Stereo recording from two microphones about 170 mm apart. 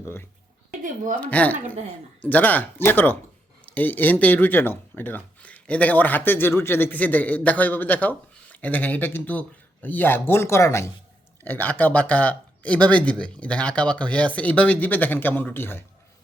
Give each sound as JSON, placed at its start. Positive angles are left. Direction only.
{"t": 0.0, "sound": "a woman's voice", "side_deg": 15}
{"t": 0.8, "sound": "a woman's voice", "side_deg": -50}
{"t": 1.2, "sound": "speech", "side_deg": 10}
{"t": 1.5, "sound": "a woman's voice", "side_deg": -45}
{"t": 2.2, "sound": "speech", "side_deg": 10}